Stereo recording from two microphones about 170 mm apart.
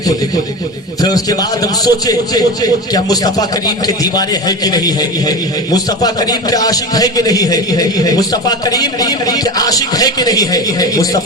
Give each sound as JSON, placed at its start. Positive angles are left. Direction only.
{"t": 1.0, "sound": "a man's voice", "side_deg": 20}